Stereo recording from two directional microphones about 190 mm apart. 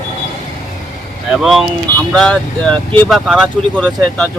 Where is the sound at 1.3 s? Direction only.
Centre (ahead or behind).